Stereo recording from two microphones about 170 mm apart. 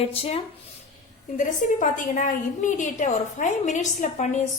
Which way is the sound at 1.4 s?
50° left (ahead or behind).